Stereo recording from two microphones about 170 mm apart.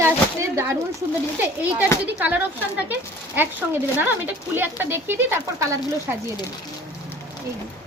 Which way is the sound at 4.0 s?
10° right (ahead or behind).